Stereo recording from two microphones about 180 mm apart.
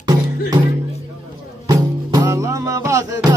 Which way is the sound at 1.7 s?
20° right (ahead or behind).